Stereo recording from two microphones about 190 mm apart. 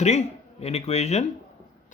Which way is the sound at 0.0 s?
35° left (ahead or behind).